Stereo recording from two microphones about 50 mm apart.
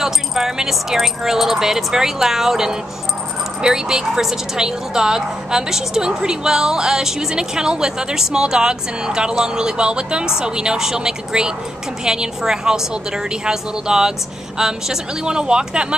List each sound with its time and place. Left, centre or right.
0.0 s a woman's voice: centre